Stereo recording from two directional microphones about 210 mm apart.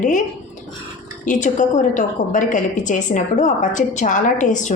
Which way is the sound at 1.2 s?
35° left (ahead or behind).